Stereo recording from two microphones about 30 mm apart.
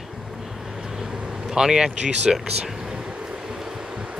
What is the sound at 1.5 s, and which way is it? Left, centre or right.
Speech, right.